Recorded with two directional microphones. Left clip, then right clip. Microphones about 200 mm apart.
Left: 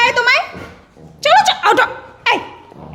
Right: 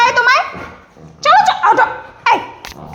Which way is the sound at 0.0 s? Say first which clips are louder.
Right 2 dB; 20° left (ahead or behind).